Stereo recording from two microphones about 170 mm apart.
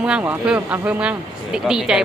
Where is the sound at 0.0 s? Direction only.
5° right (ahead or behind).